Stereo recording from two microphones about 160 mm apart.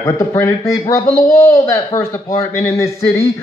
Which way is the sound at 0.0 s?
20° left (ahead or behind).